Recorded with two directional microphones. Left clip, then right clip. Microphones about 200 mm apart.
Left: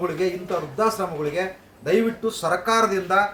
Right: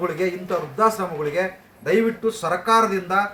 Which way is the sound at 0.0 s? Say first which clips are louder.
Right 1 dB; centre (ahead or behind).